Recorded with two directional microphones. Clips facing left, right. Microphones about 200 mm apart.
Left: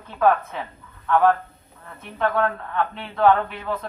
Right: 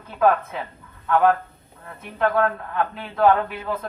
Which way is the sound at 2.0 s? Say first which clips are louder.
Right 2 dB; 5° right (ahead or behind).